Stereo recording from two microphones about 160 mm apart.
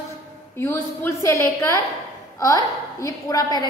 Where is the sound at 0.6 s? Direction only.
15° left (ahead or behind).